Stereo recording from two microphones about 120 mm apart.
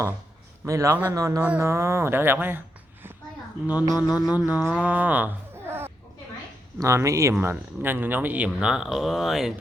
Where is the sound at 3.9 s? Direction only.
35° left (ahead or behind).